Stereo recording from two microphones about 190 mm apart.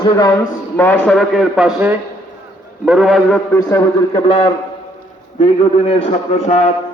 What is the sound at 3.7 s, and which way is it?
A man's voice, 30° left (ahead or behind).